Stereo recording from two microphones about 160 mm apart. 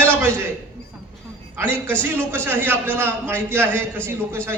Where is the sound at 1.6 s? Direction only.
10° left (ahead or behind).